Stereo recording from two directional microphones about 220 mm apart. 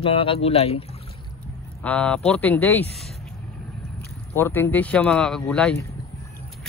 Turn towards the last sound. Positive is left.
turn(degrees=5)  # may be behind; listen again after turning